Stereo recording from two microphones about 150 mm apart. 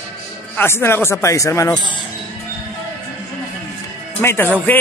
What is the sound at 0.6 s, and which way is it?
Speech, 15° left (ahead or behind).